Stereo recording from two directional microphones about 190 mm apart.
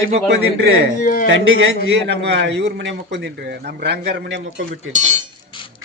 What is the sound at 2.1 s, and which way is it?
A man's voice, 60° right (ahead or behind).